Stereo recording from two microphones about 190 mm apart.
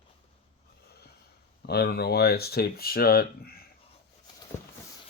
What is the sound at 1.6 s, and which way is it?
Speech, 55° left (ahead or behind).